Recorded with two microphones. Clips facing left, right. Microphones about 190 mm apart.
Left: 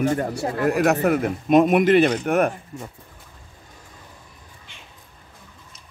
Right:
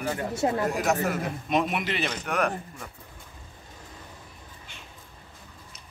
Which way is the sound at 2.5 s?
25° left (ahead or behind).